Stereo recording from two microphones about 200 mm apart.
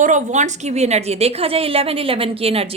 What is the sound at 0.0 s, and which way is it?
A woman's voice, 40° right (ahead or behind).